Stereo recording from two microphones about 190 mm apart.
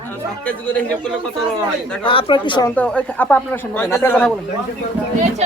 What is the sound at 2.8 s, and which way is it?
Speech, 5° left (ahead or behind).